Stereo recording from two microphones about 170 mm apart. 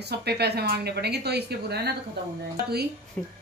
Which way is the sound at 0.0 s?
75° right (ahead or behind).